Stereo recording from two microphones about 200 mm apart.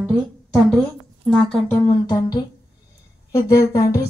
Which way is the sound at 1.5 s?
10° left (ahead or behind).